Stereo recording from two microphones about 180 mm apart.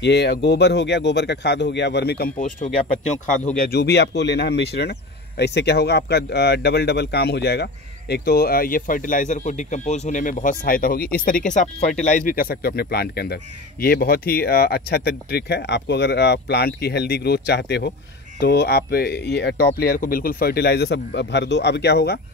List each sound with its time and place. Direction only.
0.0 s speech: 70° left (ahead or behind)